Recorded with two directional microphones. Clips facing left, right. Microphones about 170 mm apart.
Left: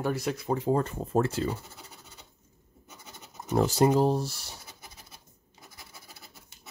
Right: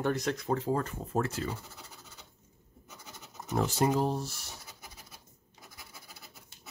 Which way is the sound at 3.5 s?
35° left (ahead or behind).